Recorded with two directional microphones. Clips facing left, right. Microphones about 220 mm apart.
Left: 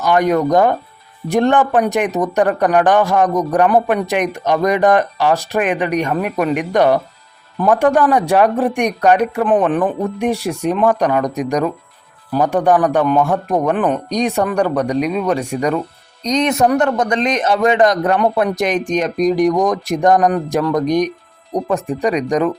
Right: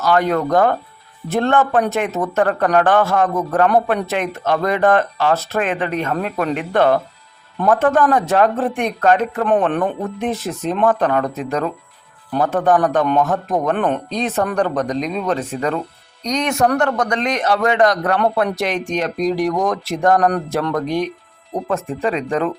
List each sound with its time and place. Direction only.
0.0 s speech: 15° left (ahead or behind)
9.4 s speech: centre (ahead or behind)
10.2 s speech: 10° left (ahead or behind)
14.1 s a man's voice: 15° left (ahead or behind)